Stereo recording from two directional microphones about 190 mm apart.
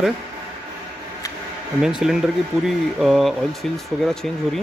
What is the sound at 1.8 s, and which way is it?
Speech, 5° right (ahead or behind).